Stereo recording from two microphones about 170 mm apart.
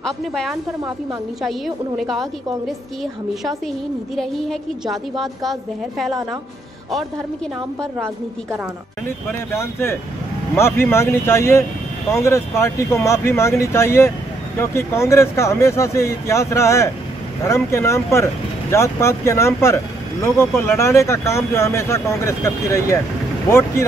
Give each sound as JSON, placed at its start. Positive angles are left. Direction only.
{"t": 0.0, "sound": "a woman's voice", "side_deg": 5}
{"t": 2.0, "sound": "a woman's voice", "side_deg": 0}
{"t": 4.2, "sound": "a woman's voice", "side_deg": 0}
{"t": 9.3, "sound": "speech", "side_deg": 15}